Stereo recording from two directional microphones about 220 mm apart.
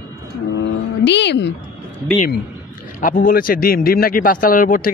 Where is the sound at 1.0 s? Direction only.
50° left (ahead or behind).